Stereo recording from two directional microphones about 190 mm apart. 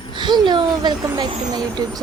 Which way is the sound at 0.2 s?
25° right (ahead or behind).